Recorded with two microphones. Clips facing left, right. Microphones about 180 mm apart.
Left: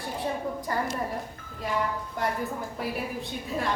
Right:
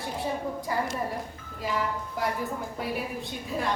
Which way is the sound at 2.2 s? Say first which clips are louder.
Even; centre (ahead or behind).